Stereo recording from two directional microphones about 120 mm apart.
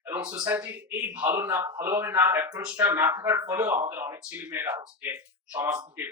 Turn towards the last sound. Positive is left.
turn(degrees=-15)  # may be behind; listen again after turning